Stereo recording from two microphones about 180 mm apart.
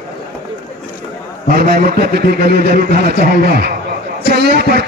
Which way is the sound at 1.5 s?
55° right (ahead or behind).